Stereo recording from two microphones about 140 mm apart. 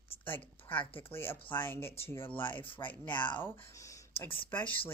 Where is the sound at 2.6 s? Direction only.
40° left (ahead or behind).